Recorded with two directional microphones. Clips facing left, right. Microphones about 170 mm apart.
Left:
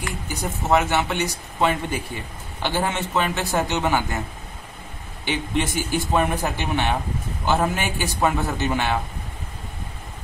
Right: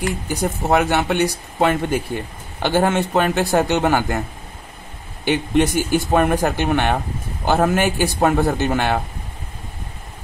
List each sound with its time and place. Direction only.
0.7 s a man's voice: 60° right (ahead or behind)
5.2 s a man's voice: 60° right (ahead or behind)